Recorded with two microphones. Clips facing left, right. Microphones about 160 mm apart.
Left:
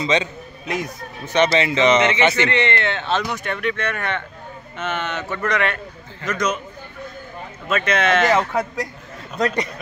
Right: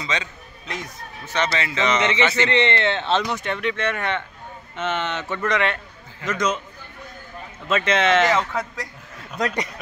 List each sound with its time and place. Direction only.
0.0 s a man's voice: 20° left (ahead or behind)
2.5 s a man's voice: 25° right (ahead or behind)
7.7 s a man's voice: 25° right (ahead or behind)
8.3 s speech: 15° left (ahead or behind)